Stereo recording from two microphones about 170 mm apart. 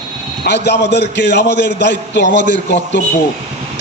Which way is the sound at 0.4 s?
90° left.